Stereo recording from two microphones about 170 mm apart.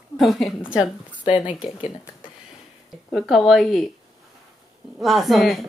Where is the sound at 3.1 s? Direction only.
Centre (ahead or behind).